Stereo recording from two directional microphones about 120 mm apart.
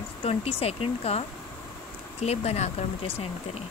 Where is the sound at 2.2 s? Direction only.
60° left (ahead or behind).